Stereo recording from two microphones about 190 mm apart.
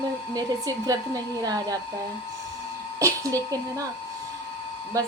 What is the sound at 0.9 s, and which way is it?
Speech, 20° right (ahead or behind).